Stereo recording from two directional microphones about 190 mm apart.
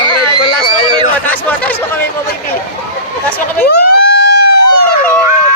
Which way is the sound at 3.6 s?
55° left (ahead or behind).